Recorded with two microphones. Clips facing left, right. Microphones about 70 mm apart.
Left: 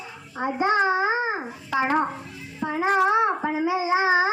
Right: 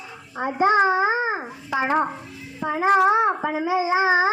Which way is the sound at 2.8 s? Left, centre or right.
Right.